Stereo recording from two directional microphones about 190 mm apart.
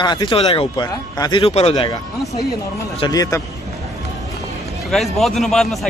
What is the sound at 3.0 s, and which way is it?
Speech, 20° left (ahead or behind).